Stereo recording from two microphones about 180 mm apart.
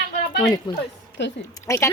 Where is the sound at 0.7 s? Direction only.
25° left (ahead or behind).